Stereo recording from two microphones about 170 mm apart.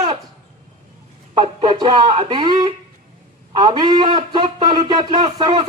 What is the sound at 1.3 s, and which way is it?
A man's voice, 30° right (ahead or behind).